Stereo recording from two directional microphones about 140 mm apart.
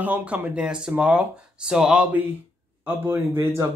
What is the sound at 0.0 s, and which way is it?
Speech, 10° right (ahead or behind).